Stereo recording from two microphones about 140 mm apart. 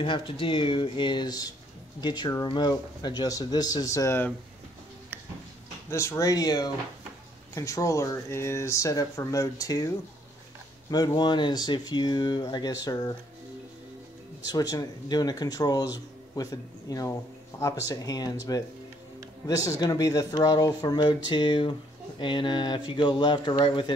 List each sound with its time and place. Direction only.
0.0 s speech: 35° left (ahead or behind); by 4.3 s 20° left (ahead or behind)
5.9 s speech: 20° left (ahead or behind)
14.4 s speech: 25° left (ahead or behind)